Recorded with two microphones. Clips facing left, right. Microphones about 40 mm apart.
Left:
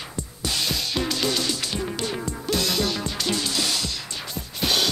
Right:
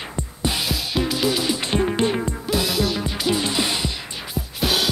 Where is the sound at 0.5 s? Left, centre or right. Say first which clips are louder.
Even; centre.